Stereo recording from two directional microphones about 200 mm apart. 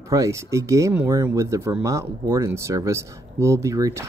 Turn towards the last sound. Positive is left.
turn(degrees=-15)  # may be behind; listen again after turning